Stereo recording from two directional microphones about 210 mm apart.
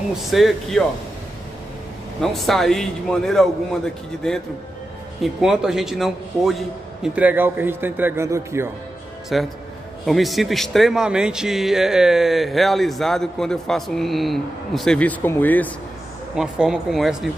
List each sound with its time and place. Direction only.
0.3 s a man's voice: centre (ahead or behind)
2.3 s a man's voice: centre (ahead or behind)
9.3 s a man's voice: centre (ahead or behind)